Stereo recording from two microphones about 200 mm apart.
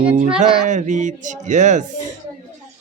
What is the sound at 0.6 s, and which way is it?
Speech, 35° right (ahead or behind).